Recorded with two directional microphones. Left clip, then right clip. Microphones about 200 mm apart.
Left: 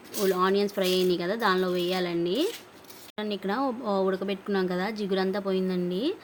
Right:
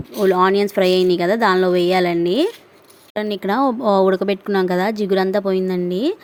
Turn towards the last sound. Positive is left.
turn(degrees=-35)  # may be behind; listen again after turning